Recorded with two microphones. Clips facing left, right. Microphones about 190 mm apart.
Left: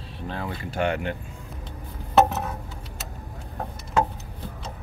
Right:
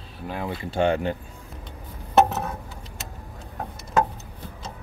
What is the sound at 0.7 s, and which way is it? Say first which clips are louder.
Speech: right 4 dB; 30° right (ahead or behind).